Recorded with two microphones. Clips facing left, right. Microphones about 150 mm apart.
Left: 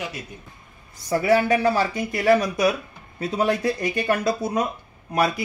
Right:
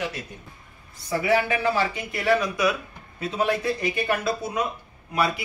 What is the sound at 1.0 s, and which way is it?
Speech, 40° left (ahead or behind).